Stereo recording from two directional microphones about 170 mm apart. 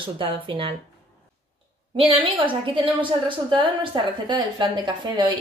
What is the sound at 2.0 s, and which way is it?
A woman's voice, 35° right (ahead or behind).